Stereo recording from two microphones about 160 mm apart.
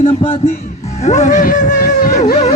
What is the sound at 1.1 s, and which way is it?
Speech, 50° left (ahead or behind).